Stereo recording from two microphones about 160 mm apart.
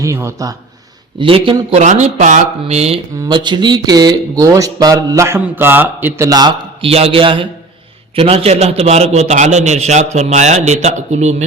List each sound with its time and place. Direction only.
0.0 s speech: 15° right (ahead or behind)
1.2 s a man's voice: 30° right (ahead or behind)
1.8 s a man's voice: 45° right (ahead or behind)
3.2 s speech: 30° right (ahead or behind)
6.8 s a man's voice: 35° right (ahead or behind)